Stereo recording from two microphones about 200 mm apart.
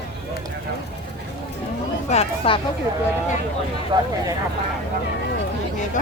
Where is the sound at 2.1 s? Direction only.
30° left (ahead or behind).